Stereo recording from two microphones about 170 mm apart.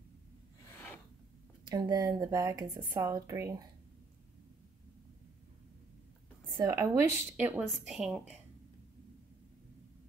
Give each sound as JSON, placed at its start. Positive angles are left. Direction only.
{"t": 1.7, "sound": "speech", "side_deg": -25}
{"t": 6.5, "sound": "a woman's voice", "side_deg": -20}